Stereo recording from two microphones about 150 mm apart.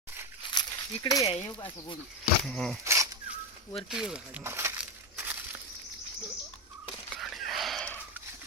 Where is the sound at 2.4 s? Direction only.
5° left (ahead or behind).